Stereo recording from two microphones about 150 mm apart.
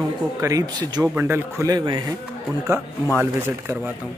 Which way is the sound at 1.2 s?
15° right (ahead or behind).